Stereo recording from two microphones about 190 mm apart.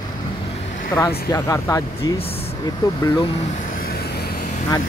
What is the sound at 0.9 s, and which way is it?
Speech, 15° left (ahead or behind).